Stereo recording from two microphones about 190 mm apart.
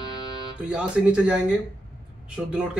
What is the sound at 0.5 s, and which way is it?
Speech, 5° right (ahead or behind).